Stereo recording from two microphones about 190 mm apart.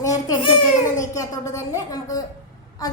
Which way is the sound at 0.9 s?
15° left (ahead or behind).